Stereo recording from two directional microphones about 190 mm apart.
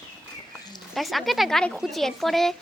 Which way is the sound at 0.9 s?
Centre (ahead or behind).